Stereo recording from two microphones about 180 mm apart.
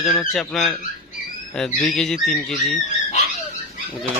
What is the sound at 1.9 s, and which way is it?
Speech, centre (ahead or behind).